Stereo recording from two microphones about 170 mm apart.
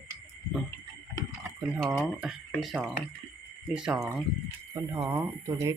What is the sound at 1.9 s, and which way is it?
Speech, centre (ahead or behind).